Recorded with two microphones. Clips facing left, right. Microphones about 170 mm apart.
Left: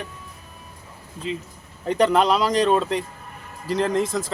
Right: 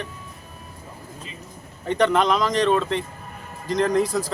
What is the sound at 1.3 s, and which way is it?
Speech, 90° left.